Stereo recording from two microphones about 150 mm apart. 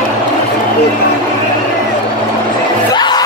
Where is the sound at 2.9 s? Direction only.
30° left (ahead or behind).